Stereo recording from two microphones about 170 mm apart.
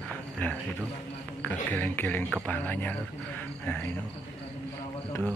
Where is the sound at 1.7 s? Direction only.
10° left (ahead or behind).